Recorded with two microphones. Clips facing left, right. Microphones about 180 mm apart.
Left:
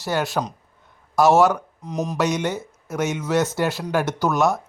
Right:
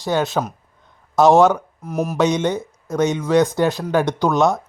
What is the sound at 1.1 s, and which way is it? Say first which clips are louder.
Speech: right 3 dB; 20° right (ahead or behind).